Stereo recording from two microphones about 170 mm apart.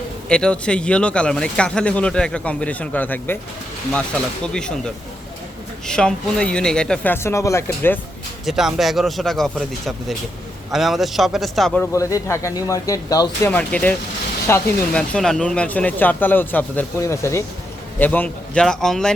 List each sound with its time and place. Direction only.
0.3 s speech: 5° left (ahead or behind)
4.4 s speech: 5° left (ahead or behind)
5.9 s speech: 5° left (ahead or behind)
8.4 s speech: centre (ahead or behind)
11.8 s speech: 20° left (ahead or behind)
13.5 s speech: 10° left (ahead or behind)